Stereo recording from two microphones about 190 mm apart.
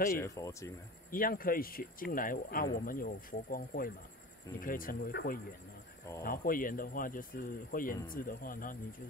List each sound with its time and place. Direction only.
0.1 s speech: 15° left (ahead or behind)
1.1 s speech: 50° left (ahead or behind)